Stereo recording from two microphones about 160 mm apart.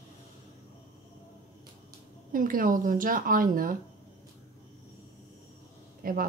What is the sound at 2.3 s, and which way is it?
A woman's voice, 60° right (ahead or behind).